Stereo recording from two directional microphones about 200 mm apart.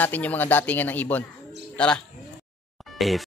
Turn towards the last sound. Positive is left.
turn(degrees=0)  # may be behind; listen again after turning